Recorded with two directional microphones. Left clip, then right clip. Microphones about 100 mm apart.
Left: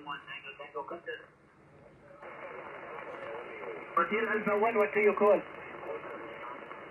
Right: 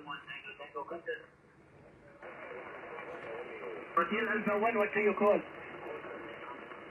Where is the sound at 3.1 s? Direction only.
35° left (ahead or behind).